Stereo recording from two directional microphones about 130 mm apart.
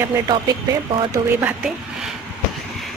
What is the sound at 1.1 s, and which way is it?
Speech, 15° right (ahead or behind).